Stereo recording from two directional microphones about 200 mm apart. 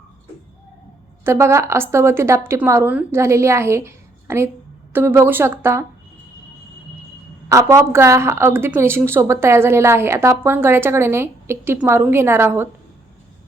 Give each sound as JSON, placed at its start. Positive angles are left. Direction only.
{"t": 1.2, "sound": "a woman's voice", "side_deg": -15}
{"t": 7.4, "sound": "a woman's voice", "side_deg": -15}